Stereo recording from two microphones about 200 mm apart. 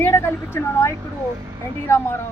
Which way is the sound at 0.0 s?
10° left (ahead or behind).